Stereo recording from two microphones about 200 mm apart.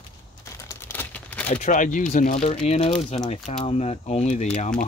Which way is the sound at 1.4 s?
40° left (ahead or behind).